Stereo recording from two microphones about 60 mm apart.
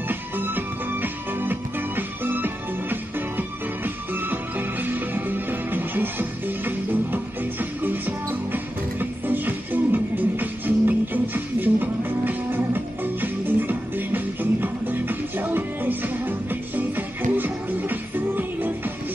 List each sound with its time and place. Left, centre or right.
0.1 s music: right